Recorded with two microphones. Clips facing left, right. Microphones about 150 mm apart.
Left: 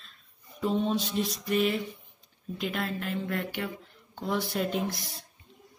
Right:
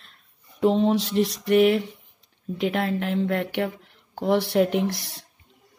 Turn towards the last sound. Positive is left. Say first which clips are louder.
# right 6 dB
turn(degrees=-70)  # may be behind; listen again after turning